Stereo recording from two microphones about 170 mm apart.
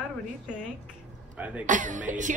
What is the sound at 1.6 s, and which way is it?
Speech, 50° right (ahead or behind).